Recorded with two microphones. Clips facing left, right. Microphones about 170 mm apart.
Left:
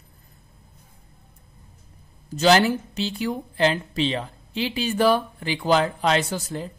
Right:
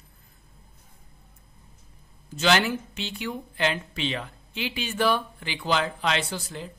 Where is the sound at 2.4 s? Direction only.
35° left (ahead or behind).